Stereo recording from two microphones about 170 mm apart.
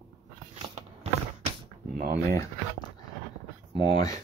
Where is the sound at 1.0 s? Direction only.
40° right (ahead or behind).